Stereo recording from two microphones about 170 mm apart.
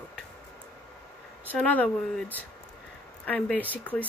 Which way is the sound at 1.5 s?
10° left (ahead or behind).